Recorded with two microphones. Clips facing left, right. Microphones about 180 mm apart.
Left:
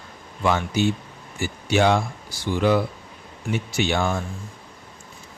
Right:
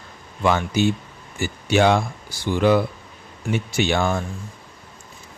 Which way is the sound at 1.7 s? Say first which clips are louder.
Right 2 dB; 65° right (ahead or behind).